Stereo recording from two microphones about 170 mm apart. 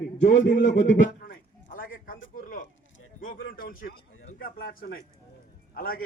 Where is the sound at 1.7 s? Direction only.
55° left (ahead or behind).